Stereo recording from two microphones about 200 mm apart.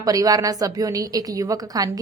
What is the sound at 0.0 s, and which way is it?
A woman's voice, 20° right (ahead or behind).